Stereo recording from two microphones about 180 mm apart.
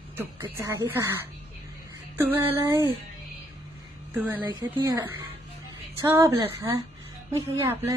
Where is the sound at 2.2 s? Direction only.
10° right (ahead or behind).